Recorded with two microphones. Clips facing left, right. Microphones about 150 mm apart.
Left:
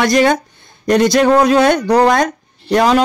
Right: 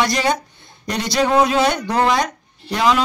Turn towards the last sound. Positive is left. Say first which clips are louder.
# left 6 dB
turn(degrees=45)  # may be behind; listen again after turning